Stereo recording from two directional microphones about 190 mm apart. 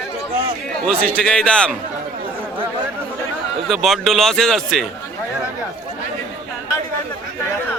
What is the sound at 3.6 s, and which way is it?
Speech, centre (ahead or behind).